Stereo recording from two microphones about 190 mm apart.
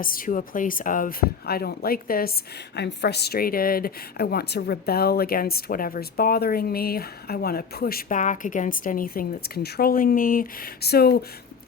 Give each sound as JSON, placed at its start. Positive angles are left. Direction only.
{"t": 0.0, "sound": "a woman's voice", "side_deg": 50}
{"t": 2.7, "sound": "a woman's voice", "side_deg": 60}